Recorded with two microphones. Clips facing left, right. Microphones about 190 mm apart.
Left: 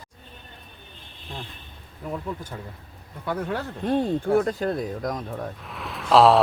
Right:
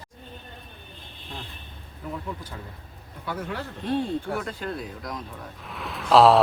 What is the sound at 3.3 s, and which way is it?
Speech, 45° left (ahead or behind).